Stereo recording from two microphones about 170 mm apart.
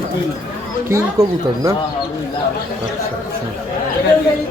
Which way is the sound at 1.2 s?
20° right (ahead or behind).